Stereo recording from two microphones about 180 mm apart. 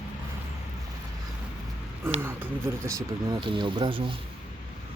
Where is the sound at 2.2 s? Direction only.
10° right (ahead or behind).